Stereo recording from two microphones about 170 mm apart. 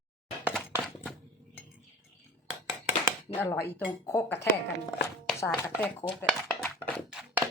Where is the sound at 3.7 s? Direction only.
15° left (ahead or behind).